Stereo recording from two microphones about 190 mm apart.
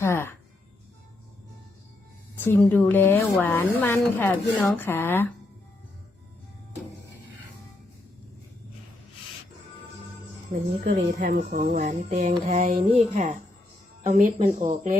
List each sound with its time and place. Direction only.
0.0 s speech: 10° left (ahead or behind)
2.4 s a woman's voice: 10° left (ahead or behind)
10.5 s speech: 45° right (ahead or behind)